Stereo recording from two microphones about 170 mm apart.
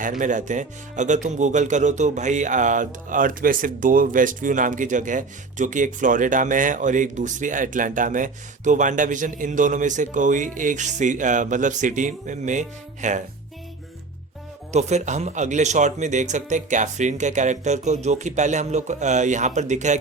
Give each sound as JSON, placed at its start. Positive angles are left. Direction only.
{"t": 0.0, "sound": "speech", "side_deg": -50}
{"t": 14.7, "sound": "speech", "side_deg": -40}